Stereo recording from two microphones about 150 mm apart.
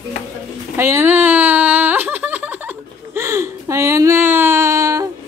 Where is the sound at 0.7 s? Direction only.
15° right (ahead or behind).